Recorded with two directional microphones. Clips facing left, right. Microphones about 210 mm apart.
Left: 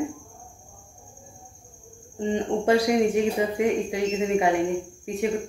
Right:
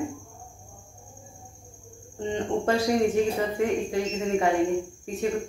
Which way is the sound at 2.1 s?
15° left (ahead or behind).